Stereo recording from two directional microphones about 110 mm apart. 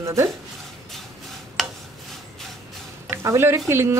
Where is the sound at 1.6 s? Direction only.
Centre (ahead or behind).